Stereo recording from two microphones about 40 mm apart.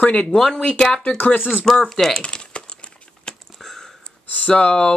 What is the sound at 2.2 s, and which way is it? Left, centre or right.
Typing, left.